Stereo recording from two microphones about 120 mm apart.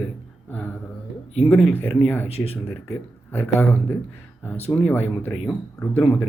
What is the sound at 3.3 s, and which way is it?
Speech, 20° left (ahead or behind).